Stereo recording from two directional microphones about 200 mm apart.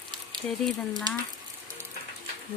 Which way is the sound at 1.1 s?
20° right (ahead or behind).